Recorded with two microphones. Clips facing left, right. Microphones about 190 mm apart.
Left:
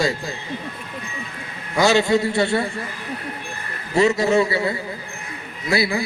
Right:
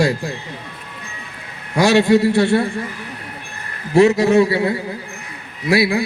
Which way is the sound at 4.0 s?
60° right (ahead or behind).